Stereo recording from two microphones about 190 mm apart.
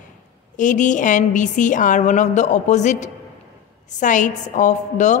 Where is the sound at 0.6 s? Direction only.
40° left (ahead or behind).